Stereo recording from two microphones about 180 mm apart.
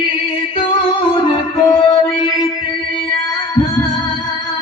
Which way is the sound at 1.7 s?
30° left (ahead or behind).